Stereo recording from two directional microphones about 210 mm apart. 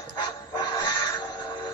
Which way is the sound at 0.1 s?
20° left (ahead or behind).